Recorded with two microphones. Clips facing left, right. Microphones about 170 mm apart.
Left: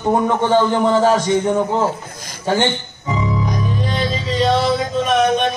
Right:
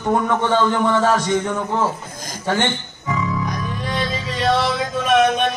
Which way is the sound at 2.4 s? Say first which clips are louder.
Left 3 dB; 20° left (ahead or behind).